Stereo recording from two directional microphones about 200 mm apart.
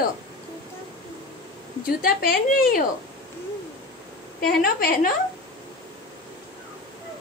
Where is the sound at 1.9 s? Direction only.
45° left (ahead or behind).